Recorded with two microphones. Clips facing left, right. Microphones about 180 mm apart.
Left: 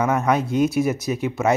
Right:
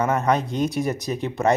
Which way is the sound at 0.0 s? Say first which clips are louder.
Left 1 dB; 5° left (ahead or behind).